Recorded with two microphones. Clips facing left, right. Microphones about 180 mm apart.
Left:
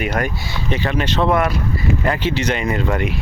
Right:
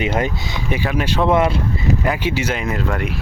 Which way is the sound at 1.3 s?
25° right (ahead or behind).